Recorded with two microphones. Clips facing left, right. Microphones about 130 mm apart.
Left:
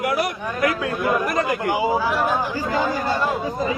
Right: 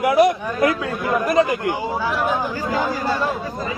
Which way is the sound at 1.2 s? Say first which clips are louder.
Right 5 dB; 20° right (ahead or behind).